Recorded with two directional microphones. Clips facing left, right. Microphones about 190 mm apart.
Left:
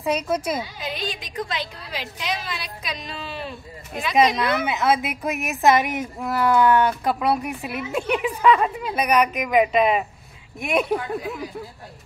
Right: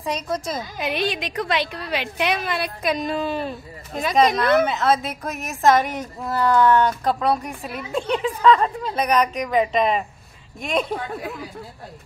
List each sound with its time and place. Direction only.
0.0 s a woman's voice: 10° left (ahead or behind)
0.7 s a woman's voice: 65° right (ahead or behind); by 4.6 s 50° right (ahead or behind)
4.6 s a woman's voice: 10° left (ahead or behind)